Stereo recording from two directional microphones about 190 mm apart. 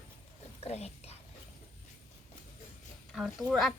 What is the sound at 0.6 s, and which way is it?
Whispering, 35° left (ahead or behind).